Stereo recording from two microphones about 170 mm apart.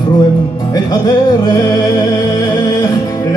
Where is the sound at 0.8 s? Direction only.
25° left (ahead or behind).